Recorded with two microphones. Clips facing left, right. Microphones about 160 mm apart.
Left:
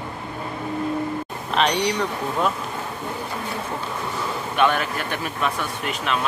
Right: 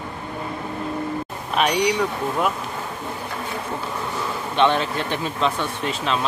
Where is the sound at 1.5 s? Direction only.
10° right (ahead or behind).